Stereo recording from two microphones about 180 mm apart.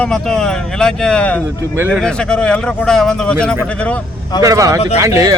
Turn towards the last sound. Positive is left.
turn(degrees=-20)  # may be behind; listen again after turning